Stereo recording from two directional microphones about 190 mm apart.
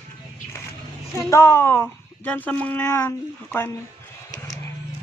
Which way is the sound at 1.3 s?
10° left (ahead or behind).